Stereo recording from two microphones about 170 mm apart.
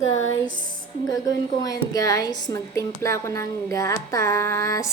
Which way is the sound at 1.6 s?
20° left (ahead or behind).